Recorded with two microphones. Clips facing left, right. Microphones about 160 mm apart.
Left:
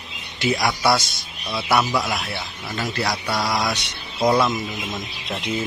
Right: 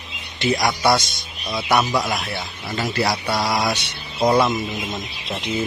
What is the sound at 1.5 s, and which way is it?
Speech, 15° right (ahead or behind).